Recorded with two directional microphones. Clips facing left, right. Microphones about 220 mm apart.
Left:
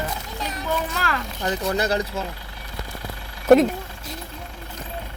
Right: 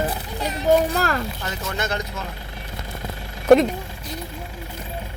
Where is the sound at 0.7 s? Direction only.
40° right (ahead or behind).